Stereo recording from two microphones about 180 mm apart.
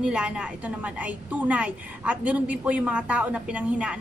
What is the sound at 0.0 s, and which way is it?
A woman's voice, 5° right (ahead or behind).